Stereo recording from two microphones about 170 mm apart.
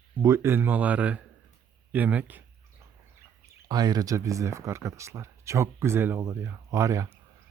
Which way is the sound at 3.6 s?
25° right (ahead or behind).